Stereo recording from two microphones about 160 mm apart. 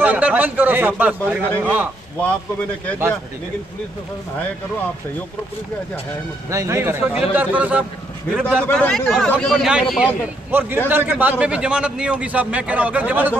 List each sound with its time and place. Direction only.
0.0 s a man's voice: 10° right (ahead or behind)
6.5 s a man's voice: 20° right (ahead or behind)
8.5 s a man's voice: 5° left (ahead or behind); by 13.4 s 10° right (ahead or behind)